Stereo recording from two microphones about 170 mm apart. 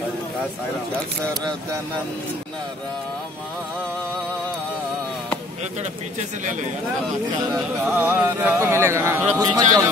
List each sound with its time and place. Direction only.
7.8 s a man's voice: 10° right (ahead or behind)